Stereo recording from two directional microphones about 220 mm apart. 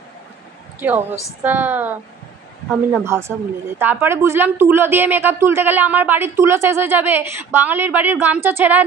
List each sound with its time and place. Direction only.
0.7 s a woman's voice: 10° right (ahead or behind)